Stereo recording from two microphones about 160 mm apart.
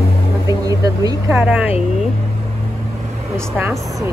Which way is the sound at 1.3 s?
10° right (ahead or behind).